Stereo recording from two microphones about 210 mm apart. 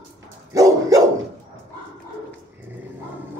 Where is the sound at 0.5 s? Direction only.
15° right (ahead or behind).